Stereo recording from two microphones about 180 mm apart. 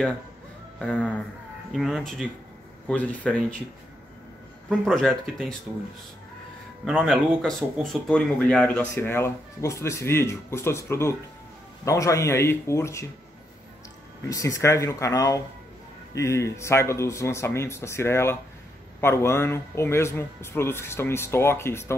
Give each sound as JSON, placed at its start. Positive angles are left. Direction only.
{"t": 0.7, "sound": "speech", "side_deg": 5}
{"t": 4.6, "sound": "speech", "side_deg": 0}
{"t": 6.8, "sound": "speech", "side_deg": -5}
{"t": 14.3, "sound": "speech", "side_deg": 15}